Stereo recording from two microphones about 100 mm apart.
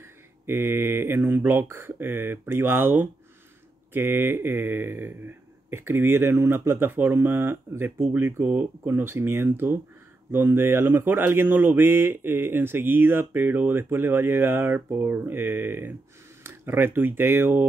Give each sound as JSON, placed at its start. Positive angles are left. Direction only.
{"t": 0.0, "sound": "speech", "side_deg": -25}